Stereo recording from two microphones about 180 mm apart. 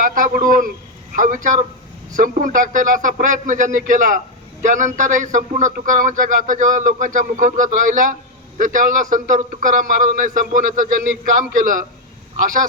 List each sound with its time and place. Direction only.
0.0 s a man's voice: 50° right (ahead or behind)